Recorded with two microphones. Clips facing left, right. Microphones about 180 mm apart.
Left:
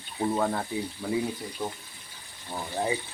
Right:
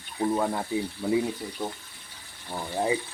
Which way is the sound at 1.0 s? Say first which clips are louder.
Right 5 dB; 5° right (ahead or behind).